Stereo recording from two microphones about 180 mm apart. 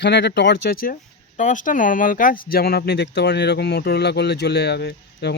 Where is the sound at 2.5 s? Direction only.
60° left (ahead or behind).